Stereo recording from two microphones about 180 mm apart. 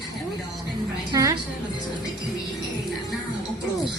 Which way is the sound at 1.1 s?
20° right (ahead or behind).